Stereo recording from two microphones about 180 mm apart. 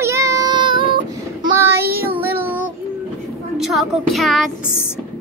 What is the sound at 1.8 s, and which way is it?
Speech, 55° right (ahead or behind).